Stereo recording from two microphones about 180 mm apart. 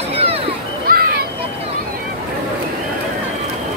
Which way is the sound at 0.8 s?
55° right (ahead or behind).